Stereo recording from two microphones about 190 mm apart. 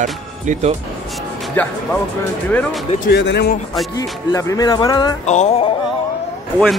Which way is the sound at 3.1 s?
65° left (ahead or behind).